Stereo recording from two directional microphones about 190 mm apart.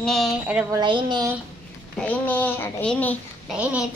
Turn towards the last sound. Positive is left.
turn(degrees=-5)  # may be behind; listen again after turning